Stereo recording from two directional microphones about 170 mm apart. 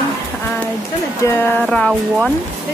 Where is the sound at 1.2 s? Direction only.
20° left (ahead or behind).